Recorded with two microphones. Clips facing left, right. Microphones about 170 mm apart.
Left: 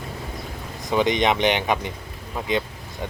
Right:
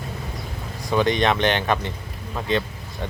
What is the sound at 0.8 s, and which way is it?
Speech, 20° left (ahead or behind).